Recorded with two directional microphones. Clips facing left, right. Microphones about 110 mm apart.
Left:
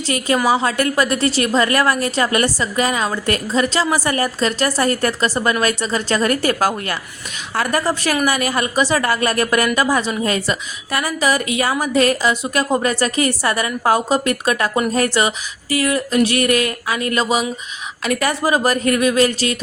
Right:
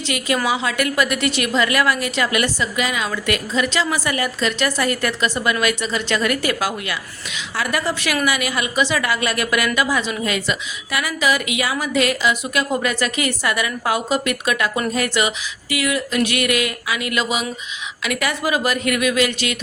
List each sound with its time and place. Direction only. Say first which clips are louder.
0.4 s a woman's voice: left 4 dB; 40° left (ahead or behind)